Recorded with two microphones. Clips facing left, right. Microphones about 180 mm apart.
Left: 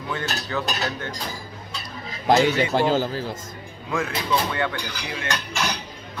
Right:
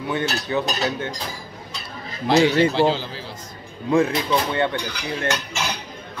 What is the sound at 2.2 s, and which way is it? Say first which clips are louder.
A man's voice: right 2 dB; 45° left (ahead or behind).